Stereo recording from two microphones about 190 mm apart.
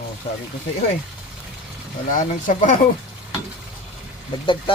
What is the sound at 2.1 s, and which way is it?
Speech, 45° left (ahead or behind).